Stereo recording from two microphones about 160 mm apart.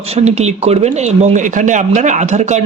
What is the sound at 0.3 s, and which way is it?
Speech, 45° right (ahead or behind).